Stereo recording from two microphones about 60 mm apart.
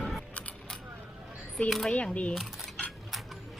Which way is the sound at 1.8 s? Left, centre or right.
Centre.